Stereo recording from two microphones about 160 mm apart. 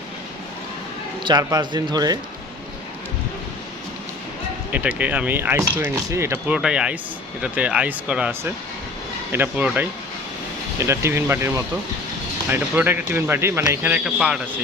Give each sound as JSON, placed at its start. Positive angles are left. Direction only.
{"t": 1.2, "sound": "speech", "side_deg": -25}
{"t": 4.7, "sound": "speech", "side_deg": -10}
{"t": 6.5, "sound": "speech", "side_deg": -5}